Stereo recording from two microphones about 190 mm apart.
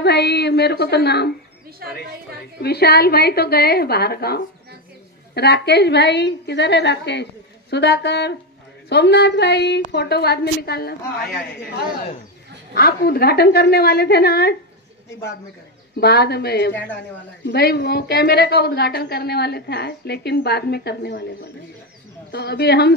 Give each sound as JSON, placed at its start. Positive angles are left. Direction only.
{"t": 0.0, "sound": "a woman's voice", "side_deg": 60}
{"t": 2.6, "sound": "a woman's voice", "side_deg": 55}
{"t": 12.7, "sound": "a woman's voice", "side_deg": 55}
{"t": 16.0, "sound": "a woman's voice", "side_deg": 55}